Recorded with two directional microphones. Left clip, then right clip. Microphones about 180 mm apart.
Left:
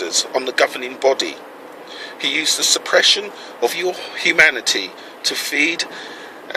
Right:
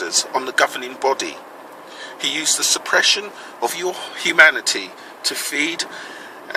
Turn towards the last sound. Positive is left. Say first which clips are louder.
# left 4 dB
turn(degrees=-25)  # may be behind; listen again after turning